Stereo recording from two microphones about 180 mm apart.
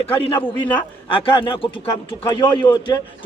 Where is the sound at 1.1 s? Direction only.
30° left (ahead or behind).